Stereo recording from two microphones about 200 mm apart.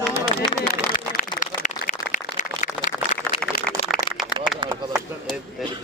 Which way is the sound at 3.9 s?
Centre (ahead or behind).